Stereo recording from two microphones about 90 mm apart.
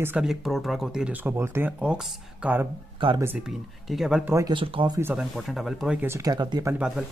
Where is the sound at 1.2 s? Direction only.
25° right (ahead or behind).